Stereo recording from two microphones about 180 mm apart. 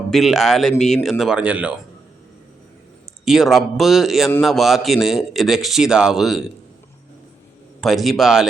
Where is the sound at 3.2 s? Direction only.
Centre (ahead or behind).